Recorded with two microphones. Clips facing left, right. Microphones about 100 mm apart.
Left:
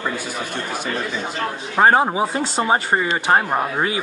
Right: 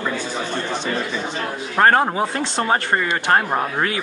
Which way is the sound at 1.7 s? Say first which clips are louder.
Left 1 dB; 10° left (ahead or behind).